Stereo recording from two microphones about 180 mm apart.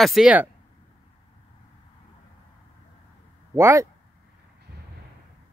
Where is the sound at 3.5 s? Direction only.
15° right (ahead or behind).